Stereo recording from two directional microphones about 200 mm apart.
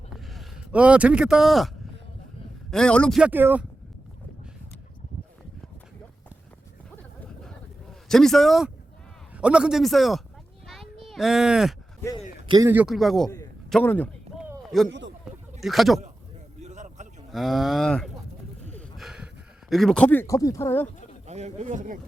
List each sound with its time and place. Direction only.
0.1 s a sound: centre (ahead or behind)
2.6 s speech: 5° left (ahead or behind)
8.0 s speech: centre (ahead or behind)
10.7 s children playing: centre (ahead or behind)
12.5 s a man's voice: 15° right (ahead or behind); by 14.1 s 10° left (ahead or behind)
14.3 s a sound: 10° right (ahead or behind)
15.6 s speech: centre (ahead or behind)
16.6 s a sound: 35° right (ahead or behind)
17.3 s speech: centre (ahead or behind)
18.7 s a sound: centre (ahead or behind)
19.7 s speech: centre (ahead or behind)
21.2 s a man's voice: 35° right (ahead or behind)